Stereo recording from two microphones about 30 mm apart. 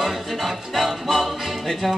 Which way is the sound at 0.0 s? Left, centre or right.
Centre.